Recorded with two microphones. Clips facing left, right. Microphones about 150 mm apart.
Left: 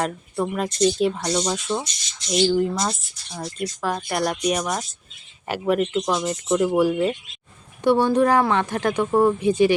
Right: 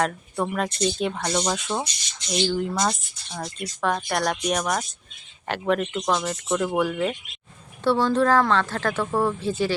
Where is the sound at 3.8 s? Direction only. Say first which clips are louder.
Right 1 dB; 5° left (ahead or behind).